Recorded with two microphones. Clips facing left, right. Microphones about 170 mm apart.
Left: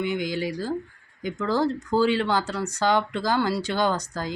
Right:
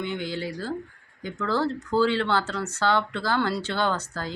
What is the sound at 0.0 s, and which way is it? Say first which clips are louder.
Speech: left 4 dB; 10° left (ahead or behind).